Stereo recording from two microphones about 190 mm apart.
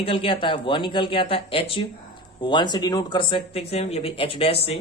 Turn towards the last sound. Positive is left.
turn(degrees=30)  # may be behind; listen again after turning